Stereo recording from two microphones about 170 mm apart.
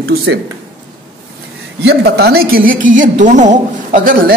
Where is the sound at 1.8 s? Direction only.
75° right (ahead or behind); by 4.1 s 50° right (ahead or behind).